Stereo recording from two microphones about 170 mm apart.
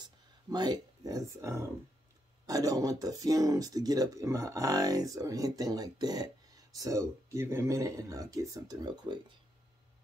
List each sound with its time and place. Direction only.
0.0 s speech: 25° right (ahead or behind)